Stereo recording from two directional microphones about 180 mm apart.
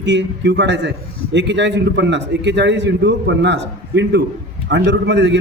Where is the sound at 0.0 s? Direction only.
80° right.